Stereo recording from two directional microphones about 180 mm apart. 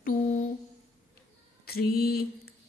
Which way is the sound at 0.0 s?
45° left (ahead or behind).